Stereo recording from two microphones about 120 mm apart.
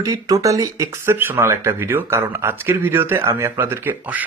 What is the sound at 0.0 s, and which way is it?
Speech, 30° right (ahead or behind).